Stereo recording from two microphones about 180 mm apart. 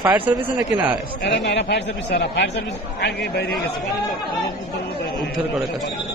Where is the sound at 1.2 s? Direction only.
80° left.